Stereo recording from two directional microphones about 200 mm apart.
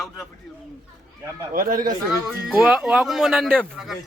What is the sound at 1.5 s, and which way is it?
Speech, 45° right (ahead or behind).